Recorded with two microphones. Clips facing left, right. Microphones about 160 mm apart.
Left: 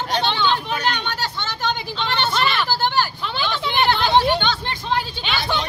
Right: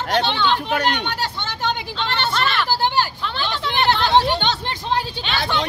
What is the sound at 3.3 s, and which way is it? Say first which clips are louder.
Vehicle: left 1 dB; 5° left (ahead or behind).